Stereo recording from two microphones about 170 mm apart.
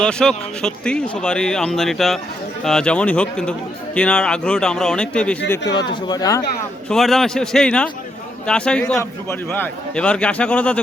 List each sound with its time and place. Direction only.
0.0 s speech: 5° left (ahead or behind)
5.9 s speech: 20° left (ahead or behind)
6.8 s a man's voice: centre (ahead or behind)